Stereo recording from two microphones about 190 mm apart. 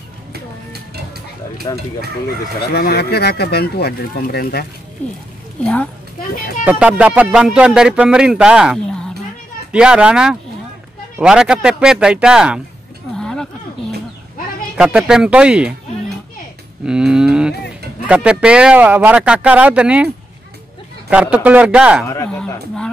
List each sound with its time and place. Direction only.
1.7 s speech: 25° left (ahead or behind)
2.7 s speech: 55° left (ahead or behind)
5.6 s speech: 5° left (ahead or behind)
6.6 s speech: 5° right (ahead or behind)
13.1 s a sound: 5° left (ahead or behind)
14.8 s speech: 5° right (ahead or behind)
16.8 s speech: 5° right (ahead or behind)
21.1 s speech: 5° right (ahead or behind)
22.1 s speech: 10° left (ahead or behind)